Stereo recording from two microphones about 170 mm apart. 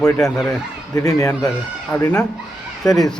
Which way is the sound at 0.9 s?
20° left (ahead or behind).